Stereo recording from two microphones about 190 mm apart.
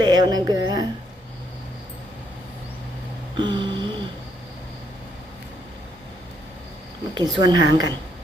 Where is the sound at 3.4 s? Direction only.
25° right (ahead or behind).